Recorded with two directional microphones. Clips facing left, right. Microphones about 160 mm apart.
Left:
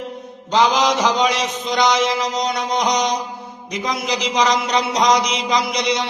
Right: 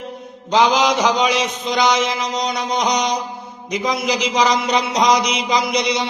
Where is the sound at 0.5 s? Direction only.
Centre (ahead or behind).